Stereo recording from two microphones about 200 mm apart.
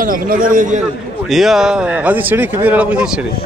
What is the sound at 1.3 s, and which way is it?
Speech, centre (ahead or behind).